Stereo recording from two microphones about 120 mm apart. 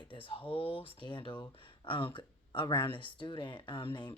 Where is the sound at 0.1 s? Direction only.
45° left (ahead or behind).